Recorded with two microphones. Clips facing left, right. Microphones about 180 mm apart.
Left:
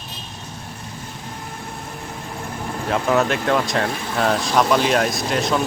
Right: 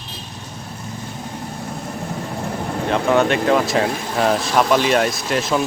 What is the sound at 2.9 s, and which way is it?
Speech, centre (ahead or behind).